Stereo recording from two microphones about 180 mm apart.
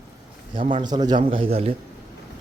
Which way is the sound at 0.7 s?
25° right (ahead or behind).